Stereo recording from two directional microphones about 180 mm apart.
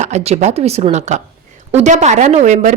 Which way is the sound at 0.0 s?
35° right (ahead or behind).